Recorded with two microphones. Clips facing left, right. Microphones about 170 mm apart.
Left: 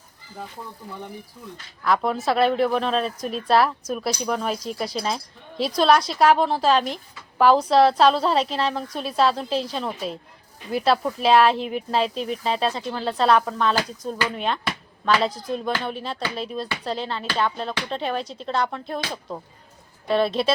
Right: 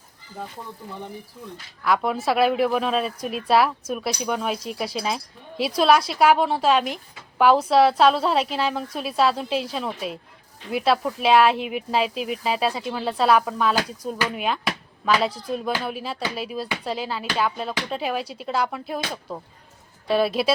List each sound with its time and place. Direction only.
1.8 s a woman's voice: centre (ahead or behind)